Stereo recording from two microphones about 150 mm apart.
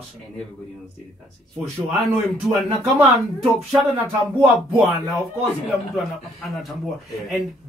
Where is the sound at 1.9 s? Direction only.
Centre (ahead or behind).